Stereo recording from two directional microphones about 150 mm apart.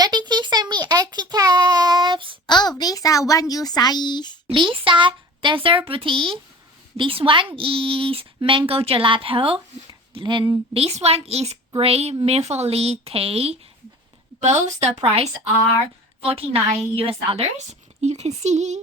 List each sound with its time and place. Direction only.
0.0 s a sound: 30° right (ahead or behind)
2.5 s a child's voice: 30° left (ahead or behind)
4.4 s speech: 35° right (ahead or behind)
10.8 s a woman's voice: 45° right (ahead or behind)